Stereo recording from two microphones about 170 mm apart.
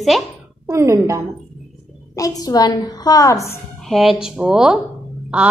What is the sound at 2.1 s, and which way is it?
A woman's voice, 20° left (ahead or behind).